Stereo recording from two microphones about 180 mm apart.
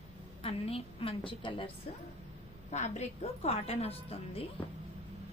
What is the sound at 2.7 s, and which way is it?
A woman's voice, 40° left (ahead or behind).